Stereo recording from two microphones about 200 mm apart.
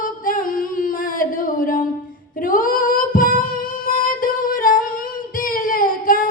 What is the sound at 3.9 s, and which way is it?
Music, 45° left (ahead or behind).